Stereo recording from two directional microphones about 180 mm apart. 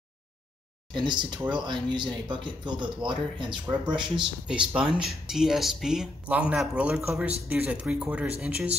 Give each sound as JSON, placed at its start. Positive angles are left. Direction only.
{"t": 0.9, "sound": "speech", "side_deg": -25}
{"t": 4.5, "sound": "a man's voice", "side_deg": -5}